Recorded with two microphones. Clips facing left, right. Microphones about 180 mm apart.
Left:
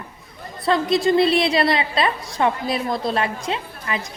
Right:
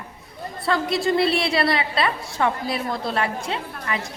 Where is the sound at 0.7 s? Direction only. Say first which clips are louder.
Left 4 dB; 20° left (ahead or behind).